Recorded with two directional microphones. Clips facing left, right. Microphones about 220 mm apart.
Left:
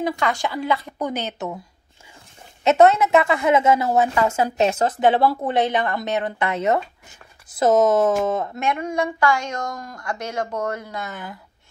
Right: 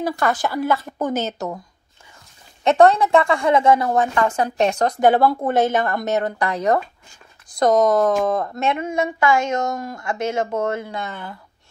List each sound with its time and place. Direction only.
0.1 s a woman's voice: 5° right (ahead or behind)
0.7 s speech: 45° right (ahead or behind)
2.8 s a woman's voice: 5° left (ahead or behind)
5.5 s speech: 45° right (ahead or behind)
6.4 s speech: 20° left (ahead or behind)
7.4 s a woman's voice: 5° left (ahead or behind)
8.9 s a woman's voice: 20° right (ahead or behind)
11.1 s a woman's voice: 5° left (ahead or behind)